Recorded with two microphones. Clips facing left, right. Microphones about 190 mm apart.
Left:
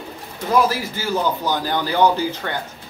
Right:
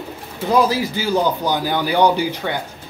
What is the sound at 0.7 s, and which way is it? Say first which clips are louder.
A man's voice: right 3 dB; 15° right (ahead or behind).